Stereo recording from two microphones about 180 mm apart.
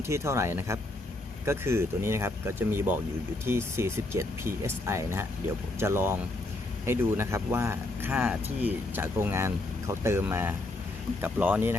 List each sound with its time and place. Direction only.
0.1 s speech: 15° right (ahead or behind)